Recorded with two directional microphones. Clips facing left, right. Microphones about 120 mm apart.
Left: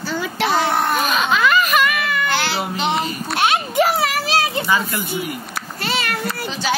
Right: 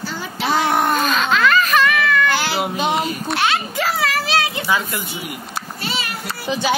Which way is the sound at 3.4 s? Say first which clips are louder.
Left 5 dB; 25° left (ahead or behind).